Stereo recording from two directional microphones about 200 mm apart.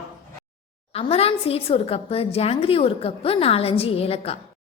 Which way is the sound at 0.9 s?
30° left (ahead or behind).